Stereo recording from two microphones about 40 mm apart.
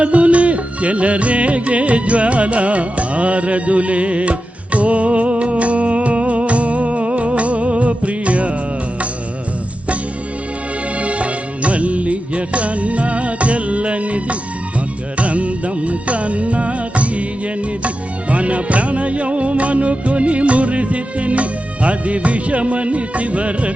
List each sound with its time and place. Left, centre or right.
0.0 s music: right
11.0 s music: right